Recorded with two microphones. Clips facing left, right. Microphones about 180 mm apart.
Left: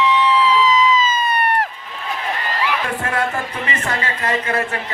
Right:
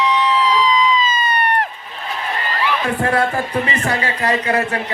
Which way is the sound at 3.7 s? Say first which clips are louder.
Right 3 dB; 35° right (ahead or behind).